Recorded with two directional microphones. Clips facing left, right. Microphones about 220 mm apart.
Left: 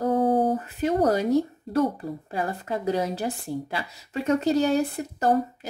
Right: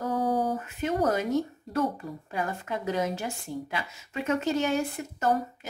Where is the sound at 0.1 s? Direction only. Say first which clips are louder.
Left 5 dB; 25° left (ahead or behind).